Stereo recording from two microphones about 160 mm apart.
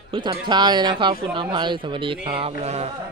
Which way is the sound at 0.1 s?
30° right (ahead or behind).